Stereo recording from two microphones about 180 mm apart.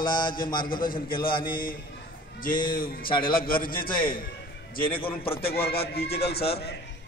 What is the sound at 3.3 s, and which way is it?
Speech, 55° left (ahead or behind).